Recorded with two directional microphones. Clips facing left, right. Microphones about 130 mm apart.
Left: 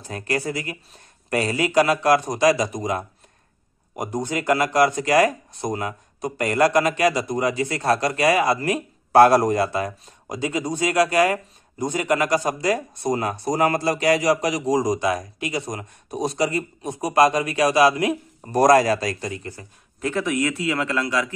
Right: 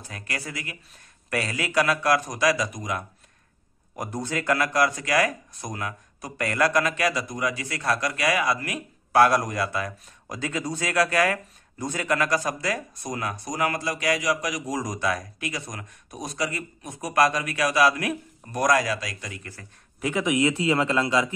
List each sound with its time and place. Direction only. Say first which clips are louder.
0.1 s speech: left 10 dB; 30° left (ahead or behind)
3.9 s speech: left 4 dB; 15° left (ahead or behind)
18.5 s a man's voice: left 7 dB; 35° left (ahead or behind)
20.0 s a man's voice: even; 10° right (ahead or behind)